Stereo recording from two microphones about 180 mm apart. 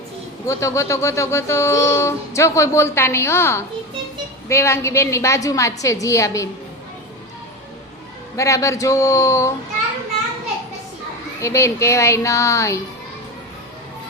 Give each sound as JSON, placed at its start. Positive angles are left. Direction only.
{"t": 0.4, "sound": "speech", "side_deg": 15}
{"t": 8.4, "sound": "speech", "side_deg": 15}
{"t": 11.3, "sound": "speech", "side_deg": 15}